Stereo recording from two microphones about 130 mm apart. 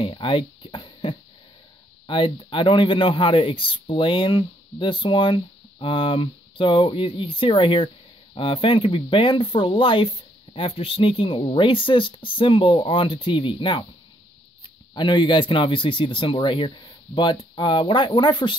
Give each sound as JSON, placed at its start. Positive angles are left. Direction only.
{"t": 0.0, "sound": "a sound", "side_deg": 40}
{"t": 2.0, "sound": "a man's voice", "side_deg": 40}
{"t": 15.0, "sound": "a man's voice", "side_deg": 35}